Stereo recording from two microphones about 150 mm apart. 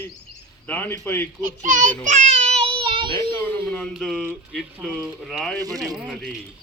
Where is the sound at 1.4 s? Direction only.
65° right (ahead or behind).